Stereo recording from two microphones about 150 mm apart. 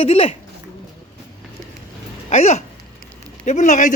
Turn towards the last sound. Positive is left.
turn(degrees=55)  # may be behind; listen again after turning